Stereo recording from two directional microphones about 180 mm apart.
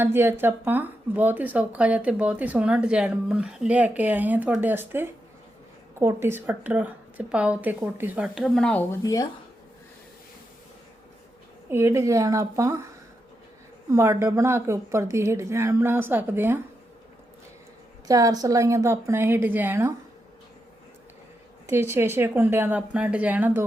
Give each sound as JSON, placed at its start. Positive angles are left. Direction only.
{"t": 0.0, "sound": "speech", "side_deg": -10}
{"t": 11.7, "sound": "speech", "side_deg": -15}
{"t": 13.9, "sound": "speech", "side_deg": -15}
{"t": 18.1, "sound": "speech", "side_deg": -20}
{"t": 21.7, "sound": "speech", "side_deg": -15}